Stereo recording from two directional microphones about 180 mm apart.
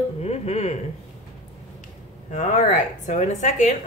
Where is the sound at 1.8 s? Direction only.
45° left (ahead or behind).